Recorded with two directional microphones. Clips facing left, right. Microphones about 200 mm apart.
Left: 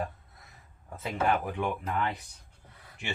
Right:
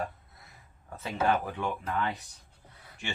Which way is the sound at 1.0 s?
15° left (ahead or behind).